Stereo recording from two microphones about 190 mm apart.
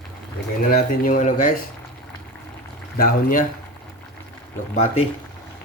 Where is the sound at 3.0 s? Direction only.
50° left (ahead or behind).